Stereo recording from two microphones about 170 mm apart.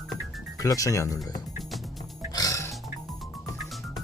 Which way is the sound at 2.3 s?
20° left (ahead or behind).